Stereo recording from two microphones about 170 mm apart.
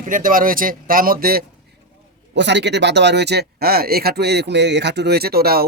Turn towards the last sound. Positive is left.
turn(degrees=-65)  # may be behind; listen again after turning